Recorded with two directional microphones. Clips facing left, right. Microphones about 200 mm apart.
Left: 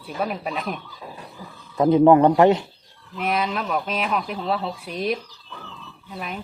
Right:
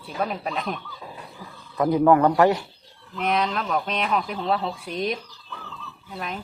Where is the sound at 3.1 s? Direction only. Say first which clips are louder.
Even; 5° left (ahead or behind).